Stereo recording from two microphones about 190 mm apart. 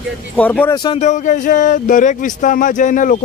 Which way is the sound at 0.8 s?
30° left (ahead or behind).